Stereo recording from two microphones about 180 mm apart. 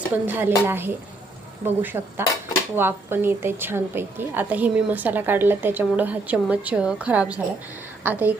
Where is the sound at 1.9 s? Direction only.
15° right (ahead or behind).